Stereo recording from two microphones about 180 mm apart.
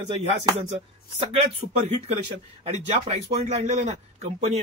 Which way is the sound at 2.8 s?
35° right (ahead or behind).